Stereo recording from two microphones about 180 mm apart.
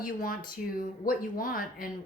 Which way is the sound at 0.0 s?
50° left (ahead or behind).